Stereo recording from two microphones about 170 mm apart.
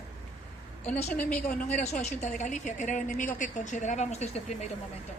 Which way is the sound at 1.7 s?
40° left (ahead or behind).